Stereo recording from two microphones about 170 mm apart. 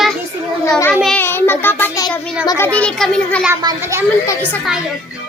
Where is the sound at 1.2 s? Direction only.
15° left (ahead or behind).